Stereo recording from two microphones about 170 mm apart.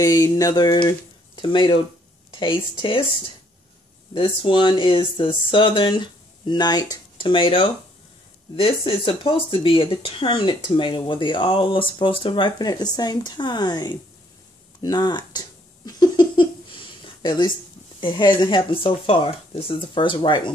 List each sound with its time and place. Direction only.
0.0 s speech: 20° left (ahead or behind)
4.1 s speech: 30° left (ahead or behind)